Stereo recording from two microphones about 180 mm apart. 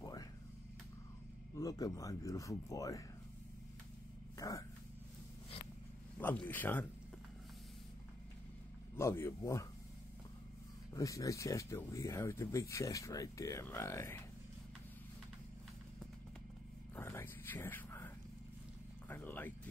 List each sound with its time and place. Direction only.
0.0 s a sound: 20° left (ahead or behind)
1.5 s speech: 20° left (ahead or behind)
4.4 s speech: 20° left (ahead or behind)
6.1 s speech: 10° left (ahead or behind)
8.9 s speech: 15° left (ahead or behind)
11.0 s speech: 20° left (ahead or behind)
16.9 s a sound: 10° left (ahead or behind)
19.0 s speech: 10° left (ahead or behind)